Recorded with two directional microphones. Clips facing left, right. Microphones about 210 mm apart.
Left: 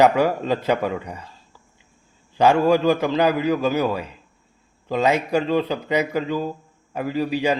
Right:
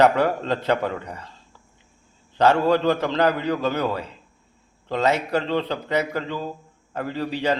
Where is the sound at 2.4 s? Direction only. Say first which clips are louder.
Left 2 dB; 10° left (ahead or behind).